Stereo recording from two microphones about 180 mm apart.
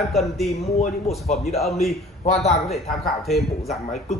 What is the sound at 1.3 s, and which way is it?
Speech, 35° left (ahead or behind).